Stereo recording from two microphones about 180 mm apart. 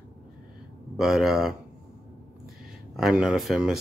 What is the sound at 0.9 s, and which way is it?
Speech, centre (ahead or behind).